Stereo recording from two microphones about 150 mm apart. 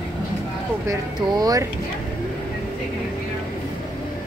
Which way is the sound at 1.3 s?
25° right (ahead or behind).